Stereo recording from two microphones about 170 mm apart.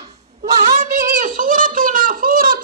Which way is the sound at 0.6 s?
45° right (ahead or behind).